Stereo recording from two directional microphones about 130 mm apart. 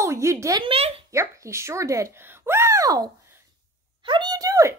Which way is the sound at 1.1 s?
20° right (ahead or behind).